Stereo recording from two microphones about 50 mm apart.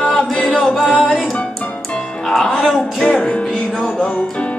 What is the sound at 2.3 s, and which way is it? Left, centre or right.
Music, centre.